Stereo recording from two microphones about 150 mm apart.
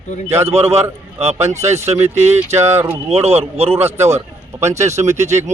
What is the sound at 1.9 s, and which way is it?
Speech, 45° right (ahead or behind).